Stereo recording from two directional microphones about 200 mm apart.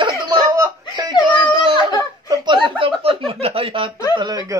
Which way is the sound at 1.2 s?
25° right (ahead or behind).